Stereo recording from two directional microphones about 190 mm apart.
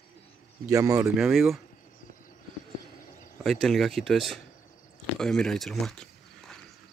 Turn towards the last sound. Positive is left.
turn(degrees=0)  # may be behind; listen again after turning